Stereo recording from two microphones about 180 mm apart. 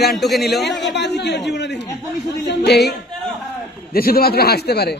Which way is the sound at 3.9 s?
55° left (ahead or behind).